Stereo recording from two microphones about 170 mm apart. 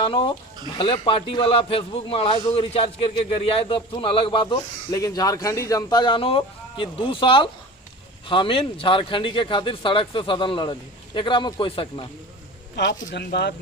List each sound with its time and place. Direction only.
0.0 s speech: 30° left (ahead or behind)
12.7 s speech: 90° left